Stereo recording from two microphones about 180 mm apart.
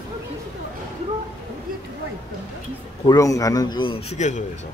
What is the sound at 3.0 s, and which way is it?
A man's voice, 20° left (ahead or behind).